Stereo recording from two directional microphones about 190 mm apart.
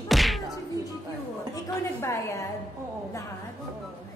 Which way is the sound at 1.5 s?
15° left (ahead or behind).